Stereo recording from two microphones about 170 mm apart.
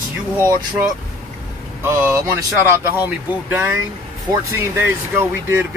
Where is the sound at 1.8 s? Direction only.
15° right (ahead or behind).